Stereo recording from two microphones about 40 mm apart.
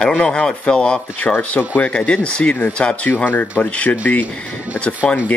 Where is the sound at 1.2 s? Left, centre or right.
Left.